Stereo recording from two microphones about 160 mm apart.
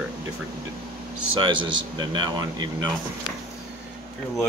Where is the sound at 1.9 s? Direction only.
30° right (ahead or behind).